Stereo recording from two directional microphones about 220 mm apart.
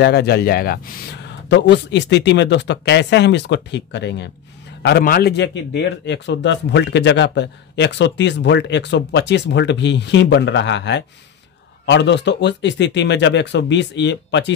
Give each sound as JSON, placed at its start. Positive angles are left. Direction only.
{"t": 0.0, "sound": "a man's voice", "side_deg": 45}